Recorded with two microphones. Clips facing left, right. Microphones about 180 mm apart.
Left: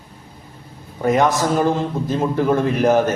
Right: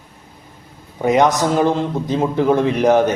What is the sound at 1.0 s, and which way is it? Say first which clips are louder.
A man's voice: right 2 dB; 20° right (ahead or behind).